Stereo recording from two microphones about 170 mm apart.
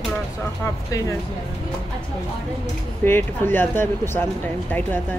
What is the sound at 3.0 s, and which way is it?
Speech, 10° left (ahead or behind).